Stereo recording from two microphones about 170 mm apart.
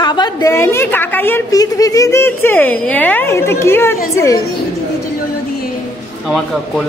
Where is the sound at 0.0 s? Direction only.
25° left (ahead or behind).